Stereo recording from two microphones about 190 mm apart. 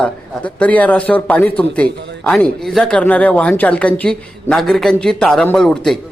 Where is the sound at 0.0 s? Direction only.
5° left (ahead or behind).